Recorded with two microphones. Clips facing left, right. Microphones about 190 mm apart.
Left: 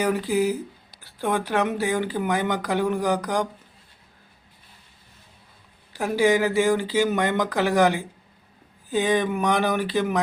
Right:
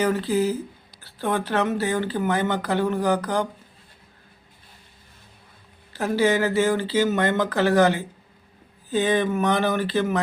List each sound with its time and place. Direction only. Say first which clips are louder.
0.0 s speech: even; 15° left (ahead or behind)
5.9 s speech: left 1 dB; 15° left (ahead or behind)